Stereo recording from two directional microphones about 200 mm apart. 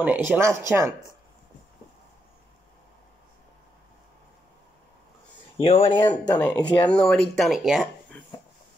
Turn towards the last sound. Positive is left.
turn(degrees=-5)  # may be behind; listen again after turning